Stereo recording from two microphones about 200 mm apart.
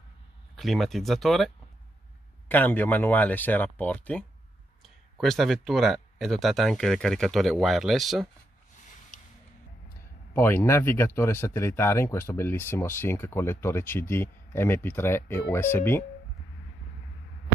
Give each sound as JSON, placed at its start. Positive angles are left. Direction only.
{"t": 0.6, "sound": "speech", "side_deg": 0}
{"t": 10.3, "sound": "speech", "side_deg": 10}